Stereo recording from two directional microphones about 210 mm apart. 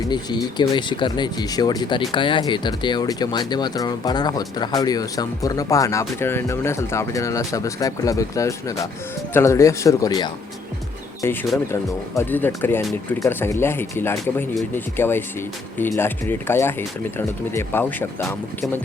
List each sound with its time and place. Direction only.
0.1 s speech: 20° left (ahead or behind)
12.1 s speech: 10° left (ahead or behind)